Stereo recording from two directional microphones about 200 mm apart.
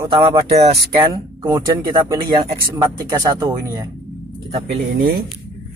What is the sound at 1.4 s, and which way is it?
Speech, 15° right (ahead or behind).